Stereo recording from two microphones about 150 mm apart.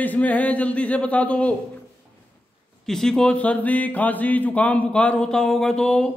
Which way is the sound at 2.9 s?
5° left (ahead or behind).